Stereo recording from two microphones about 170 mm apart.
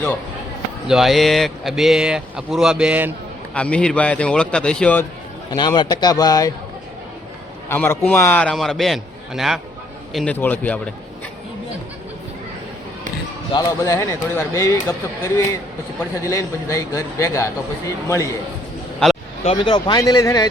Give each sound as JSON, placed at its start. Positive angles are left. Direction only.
{"t": 0.9, "sound": "speech", "side_deg": 0}
{"t": 3.5, "sound": "speech", "side_deg": 5}
{"t": 5.5, "sound": "speech", "side_deg": 25}
{"t": 7.7, "sound": "a man's voice", "side_deg": 10}
{"t": 13.5, "sound": "speech", "side_deg": 20}
{"t": 16.2, "sound": "speech", "side_deg": 20}
{"t": 19.5, "sound": "speech", "side_deg": 30}